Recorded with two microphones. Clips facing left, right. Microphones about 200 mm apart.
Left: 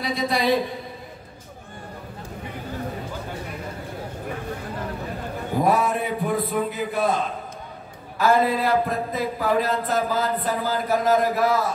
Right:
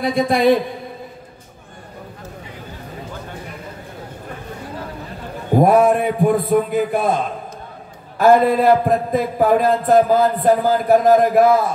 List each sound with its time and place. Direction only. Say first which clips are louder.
0.0 s a man's voice: right 8 dB; 50° right (ahead or behind)
5.6 s a man's voice: right 8 dB; 50° right (ahead or behind)
8.2 s a man's voice: right 7 dB; 50° right (ahead or behind)